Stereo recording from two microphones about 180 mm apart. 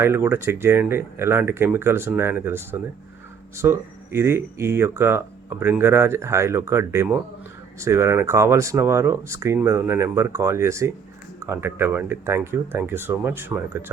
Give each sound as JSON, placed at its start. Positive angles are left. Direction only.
{"t": 0.0, "sound": "speech", "side_deg": -10}